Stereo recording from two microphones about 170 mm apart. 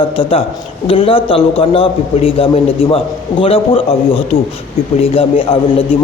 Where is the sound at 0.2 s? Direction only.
35° left (ahead or behind).